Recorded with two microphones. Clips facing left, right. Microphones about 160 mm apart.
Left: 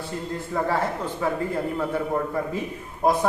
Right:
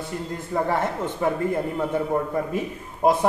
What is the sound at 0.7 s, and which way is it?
Speech, 20° right (ahead or behind).